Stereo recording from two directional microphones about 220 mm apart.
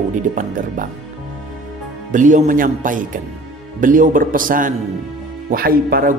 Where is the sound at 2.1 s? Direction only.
35° right (ahead or behind).